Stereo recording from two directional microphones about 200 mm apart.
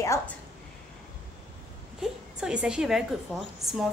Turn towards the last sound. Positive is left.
turn(degrees=0)  # may be behind; listen again after turning